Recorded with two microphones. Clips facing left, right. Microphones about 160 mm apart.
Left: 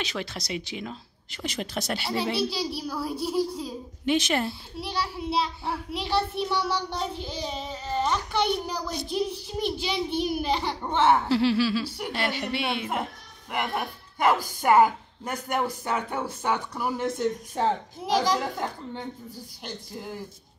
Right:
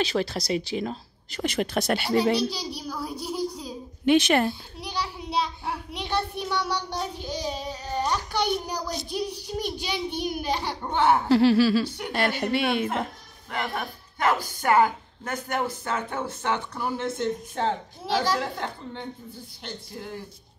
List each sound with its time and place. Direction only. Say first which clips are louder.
0.0 s speech: right 7 dB; 35° right (ahead or behind)
1.4 s speech: right 6 dB; 60° right (ahead or behind)
2.3 s a child's voice: right 1 dB; 5° left (ahead or behind)
4.0 s speech: right 5 dB; 60° right (ahead or behind)
4.5 s a child's voice: right 1 dB; 5° left (ahead or behind)
11.2 s a woman's voice: right 4 dB; 45° right (ahead or behind)
13.5 s a woman's voice: left 1 dB; 10° left (ahead or behind)